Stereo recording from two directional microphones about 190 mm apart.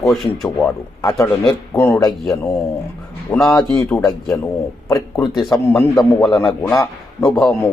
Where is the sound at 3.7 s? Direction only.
15° left (ahead or behind).